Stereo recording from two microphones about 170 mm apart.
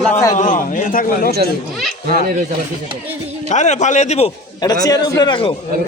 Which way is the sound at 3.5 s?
45° left (ahead or behind).